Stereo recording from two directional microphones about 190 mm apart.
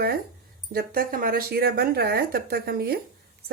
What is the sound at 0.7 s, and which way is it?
A woman's voice, 50° right (ahead or behind).